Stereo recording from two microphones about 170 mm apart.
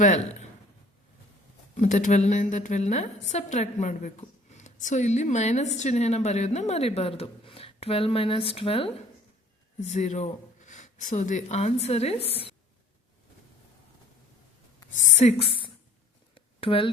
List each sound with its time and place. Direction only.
0.0 s a woman's voice: 45° left (ahead or behind)
1.7 s a woman's voice: 45° left (ahead or behind)
15.1 s speech: 40° left (ahead or behind)
16.3 s a sound: 30° left (ahead or behind)